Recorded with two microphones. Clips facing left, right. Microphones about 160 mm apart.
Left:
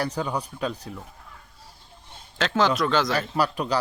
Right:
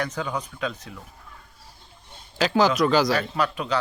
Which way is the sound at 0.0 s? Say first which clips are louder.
Left 1 dB; 35° left (ahead or behind).